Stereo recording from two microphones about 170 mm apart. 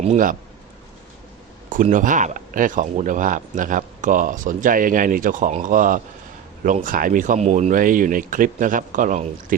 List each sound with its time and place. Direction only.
0.0 s speech: 45° right (ahead or behind)
1.7 s speech: 50° right (ahead or behind)